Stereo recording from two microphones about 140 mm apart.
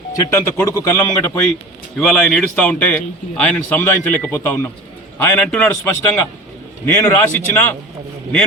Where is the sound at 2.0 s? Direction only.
5° left (ahead or behind).